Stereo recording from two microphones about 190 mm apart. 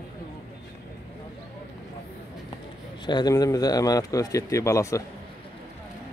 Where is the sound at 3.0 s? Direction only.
20° left (ahead or behind).